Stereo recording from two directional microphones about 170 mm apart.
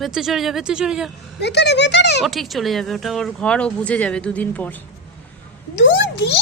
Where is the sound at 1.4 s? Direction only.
85° left.